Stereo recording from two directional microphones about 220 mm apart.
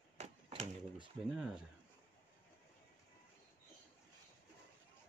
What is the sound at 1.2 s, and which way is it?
Speech, centre (ahead or behind).